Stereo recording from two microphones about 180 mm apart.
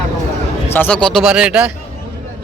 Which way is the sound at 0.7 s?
10° left (ahead or behind).